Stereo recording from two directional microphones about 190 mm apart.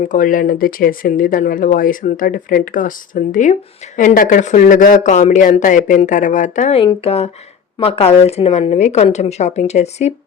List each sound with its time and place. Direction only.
0.0 s a woman's voice: 45° left (ahead or behind)